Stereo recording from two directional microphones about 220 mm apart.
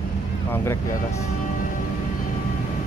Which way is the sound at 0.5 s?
10° left (ahead or behind).